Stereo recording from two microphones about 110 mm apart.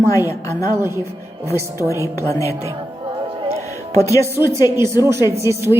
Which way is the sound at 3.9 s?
30° left (ahead or behind).